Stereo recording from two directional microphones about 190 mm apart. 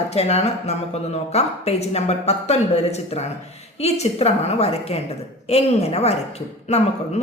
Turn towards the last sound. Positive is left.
turn(degrees=35)  # may be behind; listen again after turning